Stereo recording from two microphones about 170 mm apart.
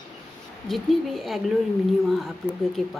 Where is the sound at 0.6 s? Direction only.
Centre (ahead or behind).